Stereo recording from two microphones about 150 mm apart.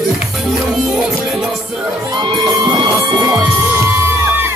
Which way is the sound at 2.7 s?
25° right (ahead or behind).